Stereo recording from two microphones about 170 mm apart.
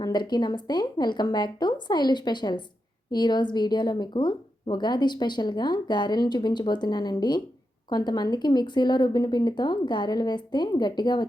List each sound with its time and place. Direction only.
0.0 s speech: 25° left (ahead or behind)